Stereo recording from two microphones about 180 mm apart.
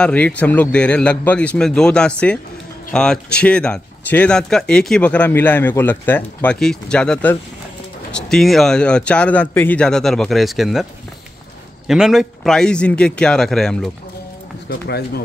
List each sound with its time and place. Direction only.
0.0 s a man's voice: 5° left (ahead or behind)
11.9 s speech: centre (ahead or behind)
14.7 s speech: 60° left (ahead or behind)